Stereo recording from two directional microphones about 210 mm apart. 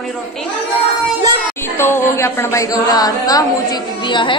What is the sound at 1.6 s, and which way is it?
Speech, 10° left (ahead or behind).